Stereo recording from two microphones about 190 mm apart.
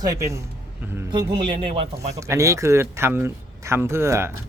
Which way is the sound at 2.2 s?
15° right (ahead or behind).